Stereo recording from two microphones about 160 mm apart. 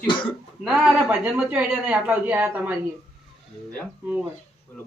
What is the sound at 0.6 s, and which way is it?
Speech, 5° right (ahead or behind).